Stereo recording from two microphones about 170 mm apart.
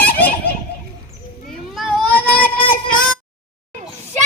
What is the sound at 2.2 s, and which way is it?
Child singing, 60° left (ahead or behind).